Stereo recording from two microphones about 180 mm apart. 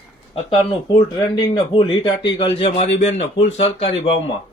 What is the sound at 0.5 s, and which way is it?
Speech, 25° left (ahead or behind).